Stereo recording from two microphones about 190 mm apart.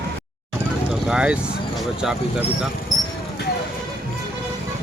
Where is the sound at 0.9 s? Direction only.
5° right (ahead or behind).